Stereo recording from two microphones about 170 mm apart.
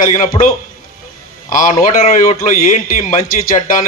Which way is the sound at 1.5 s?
50° left (ahead or behind).